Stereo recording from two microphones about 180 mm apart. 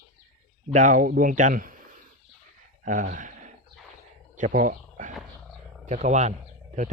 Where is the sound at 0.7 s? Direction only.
45° right (ahead or behind).